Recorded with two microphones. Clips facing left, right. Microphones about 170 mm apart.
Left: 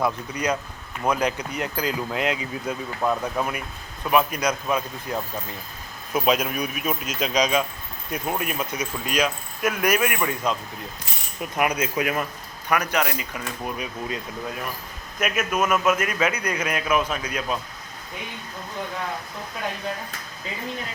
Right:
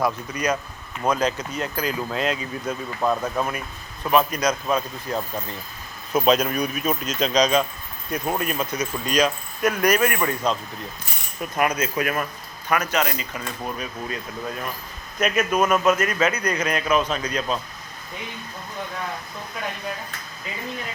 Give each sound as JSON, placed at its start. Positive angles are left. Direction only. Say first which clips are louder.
{"t": 1.0, "sound": "speech", "louder": "right 1 dB", "side_deg": 10}
{"t": 3.0, "sound": "speech", "louder": "right 1 dB", "side_deg": 0}
{"t": 4.1, "sound": "speech", "louder": "right 1 dB", "side_deg": 10}
{"t": 15.2, "sound": "speech", "louder": "right 3 dB", "side_deg": 5}